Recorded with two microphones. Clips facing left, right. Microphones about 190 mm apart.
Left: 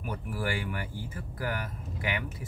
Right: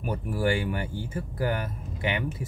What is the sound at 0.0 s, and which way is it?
Speech, 30° right (ahead or behind).